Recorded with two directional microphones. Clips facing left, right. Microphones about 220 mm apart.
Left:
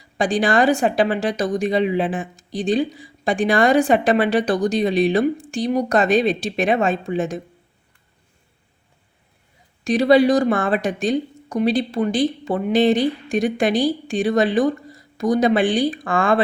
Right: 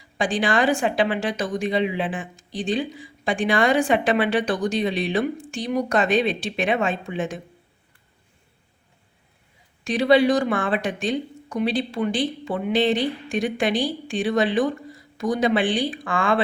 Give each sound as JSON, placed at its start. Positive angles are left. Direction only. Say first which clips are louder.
{"t": 0.2, "sound": "a woman's voice", "louder": "left 4 dB", "side_deg": 40}
{"t": 9.8, "sound": "a woman's voice", "louder": "left 3 dB", "side_deg": 40}